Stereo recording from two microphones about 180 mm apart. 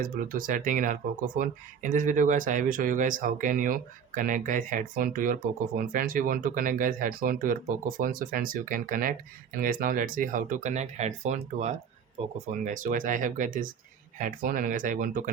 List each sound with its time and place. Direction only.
0.0 s speech: 50° right (ahead or behind); by 12.3 s 30° right (ahead or behind)
12.6 s speech: 45° right (ahead or behind)